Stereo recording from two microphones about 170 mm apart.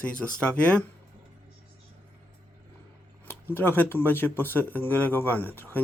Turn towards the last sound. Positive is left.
turn(degrees=10)  # may be behind; listen again after turning